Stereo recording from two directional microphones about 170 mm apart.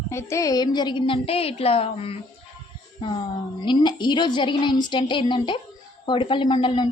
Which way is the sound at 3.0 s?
30° left (ahead or behind).